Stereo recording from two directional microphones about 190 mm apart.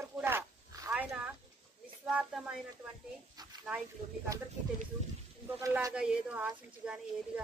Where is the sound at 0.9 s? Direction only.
5° right (ahead or behind).